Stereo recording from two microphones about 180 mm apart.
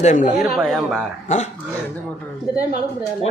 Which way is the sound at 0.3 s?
Centre (ahead or behind).